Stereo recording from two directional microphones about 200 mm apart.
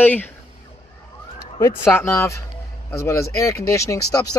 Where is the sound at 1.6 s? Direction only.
15° left (ahead or behind).